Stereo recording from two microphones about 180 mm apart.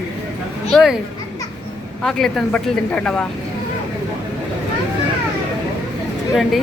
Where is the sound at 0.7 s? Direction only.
Centre (ahead or behind).